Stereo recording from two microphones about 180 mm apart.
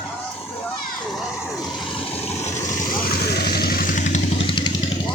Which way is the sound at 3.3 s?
60° left (ahead or behind).